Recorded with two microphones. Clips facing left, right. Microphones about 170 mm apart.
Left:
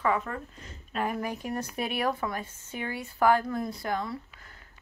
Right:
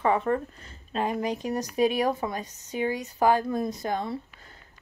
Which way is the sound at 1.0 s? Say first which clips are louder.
Right 4 dB; 20° right (ahead or behind).